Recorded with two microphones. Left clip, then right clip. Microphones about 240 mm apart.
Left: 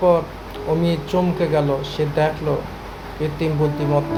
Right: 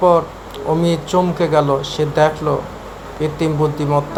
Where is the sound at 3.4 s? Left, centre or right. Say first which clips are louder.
Right 3 dB; centre.